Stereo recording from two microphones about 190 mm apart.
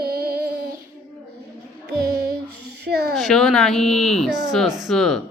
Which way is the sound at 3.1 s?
Centre (ahead or behind).